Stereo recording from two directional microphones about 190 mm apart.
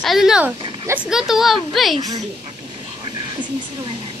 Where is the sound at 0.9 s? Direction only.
5° right (ahead or behind).